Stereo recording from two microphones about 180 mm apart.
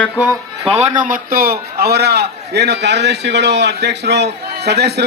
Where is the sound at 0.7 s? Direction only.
40° right (ahead or behind).